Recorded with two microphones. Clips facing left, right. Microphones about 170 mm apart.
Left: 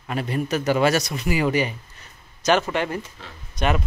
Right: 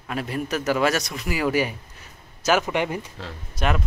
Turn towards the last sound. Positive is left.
turn(degrees=0)  # may be behind; listen again after turning